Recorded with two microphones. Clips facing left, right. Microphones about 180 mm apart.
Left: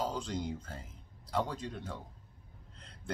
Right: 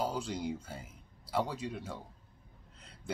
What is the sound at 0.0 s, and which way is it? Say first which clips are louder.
Speech: right 1 dB; 5° right (ahead or behind).